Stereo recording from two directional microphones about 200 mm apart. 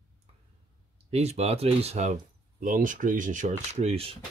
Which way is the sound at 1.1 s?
30° right (ahead or behind).